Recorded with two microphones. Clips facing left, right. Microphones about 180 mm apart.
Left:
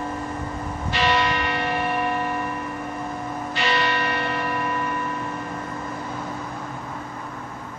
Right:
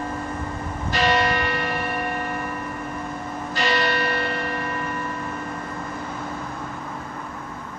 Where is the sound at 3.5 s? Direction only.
40° right (ahead or behind).